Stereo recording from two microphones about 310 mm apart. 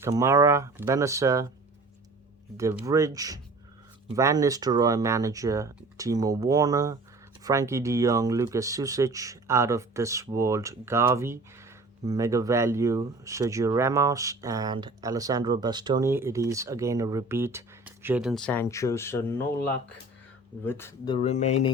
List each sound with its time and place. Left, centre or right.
0.0 s speech: centre
2.6 s speech: centre; by 21.7 s left